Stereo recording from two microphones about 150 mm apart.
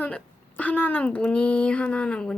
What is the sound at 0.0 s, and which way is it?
A woman's voice, 10° left (ahead or behind).